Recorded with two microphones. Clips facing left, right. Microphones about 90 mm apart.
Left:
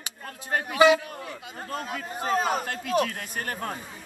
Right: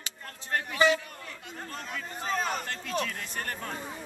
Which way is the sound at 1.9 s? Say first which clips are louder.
Left 5 dB; 45° left (ahead or behind).